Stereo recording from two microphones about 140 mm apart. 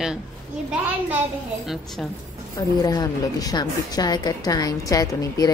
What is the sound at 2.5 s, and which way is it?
A woman's voice, 25° left (ahead or behind).